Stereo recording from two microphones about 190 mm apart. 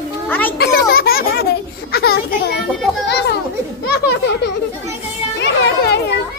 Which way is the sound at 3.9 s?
60° left (ahead or behind).